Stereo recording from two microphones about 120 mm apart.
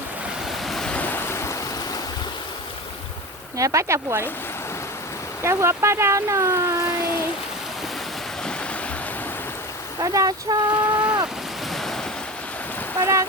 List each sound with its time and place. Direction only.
0.4 s waves: centre (ahead or behind); by 2.0 s 25° left (ahead or behind)
3.6 s speech: 25° right (ahead or behind)
5.4 s speech: 20° right (ahead or behind)
10.0 s speech: 35° right (ahead or behind)
11.7 s waves: centre (ahead or behind)
13.0 s speech: 25° right (ahead or behind)